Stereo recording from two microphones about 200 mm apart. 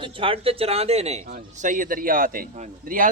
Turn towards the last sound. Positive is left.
turn(degrees=-45)  # may be behind; listen again after turning